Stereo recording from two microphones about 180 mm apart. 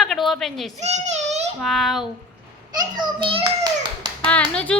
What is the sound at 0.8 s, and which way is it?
Child singing, 40° right (ahead or behind).